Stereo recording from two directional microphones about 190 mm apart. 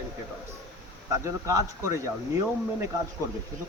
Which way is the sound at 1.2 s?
15° right (ahead or behind).